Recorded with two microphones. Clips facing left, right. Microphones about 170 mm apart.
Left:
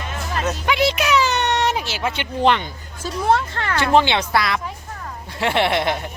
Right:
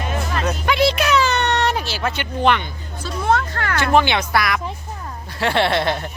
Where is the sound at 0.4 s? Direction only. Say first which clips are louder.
Right 1 dB; 10° left (ahead or behind).